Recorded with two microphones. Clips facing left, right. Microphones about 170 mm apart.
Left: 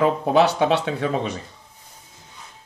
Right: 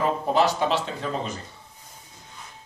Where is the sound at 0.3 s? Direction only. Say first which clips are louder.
Left 4 dB; 65° left (ahead or behind).